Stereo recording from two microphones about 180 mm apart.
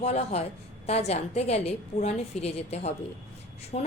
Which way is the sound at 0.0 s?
35° left (ahead or behind).